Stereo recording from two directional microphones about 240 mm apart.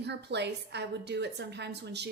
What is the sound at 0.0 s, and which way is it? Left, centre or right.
A woman's voice, right.